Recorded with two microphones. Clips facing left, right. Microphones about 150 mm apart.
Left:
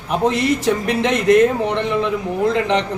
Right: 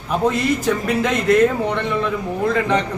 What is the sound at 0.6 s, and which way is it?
Speech, 25° left (ahead or behind).